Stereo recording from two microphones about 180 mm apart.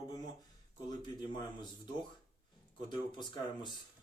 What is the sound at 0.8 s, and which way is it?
Speech, 25° left (ahead or behind).